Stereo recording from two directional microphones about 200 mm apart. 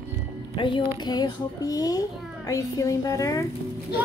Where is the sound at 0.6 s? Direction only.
25° left (ahead or behind).